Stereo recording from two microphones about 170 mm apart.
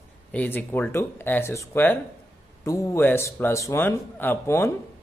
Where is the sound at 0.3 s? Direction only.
10° left (ahead or behind).